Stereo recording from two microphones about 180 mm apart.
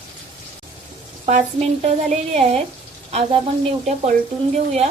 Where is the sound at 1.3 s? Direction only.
40° right (ahead or behind).